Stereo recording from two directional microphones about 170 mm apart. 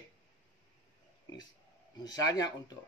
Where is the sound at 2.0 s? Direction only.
20° left (ahead or behind).